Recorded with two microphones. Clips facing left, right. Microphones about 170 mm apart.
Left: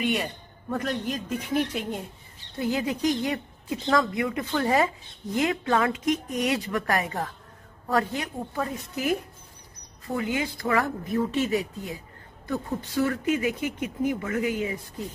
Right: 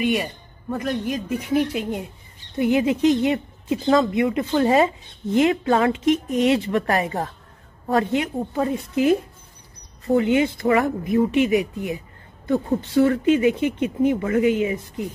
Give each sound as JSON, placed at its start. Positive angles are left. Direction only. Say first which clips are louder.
{"t": 0.0, "sound": "a man's voice", "louder": "right 5 dB", "side_deg": -10}
{"t": 8.2, "sound": "speech", "louder": "right 7 dB", "side_deg": -20}
{"t": 10.1, "sound": "speech", "louder": "right 10 dB", "side_deg": -25}
{"t": 12.9, "sound": "speech", "louder": "right 8 dB", "side_deg": -30}